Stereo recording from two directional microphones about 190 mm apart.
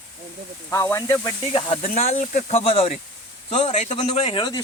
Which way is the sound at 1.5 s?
30° left (ahead or behind).